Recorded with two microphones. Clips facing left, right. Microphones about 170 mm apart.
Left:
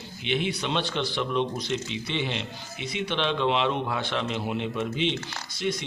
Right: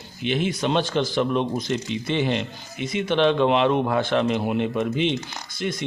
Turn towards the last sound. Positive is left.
turn(degrees=-50)  # may be behind; listen again after turning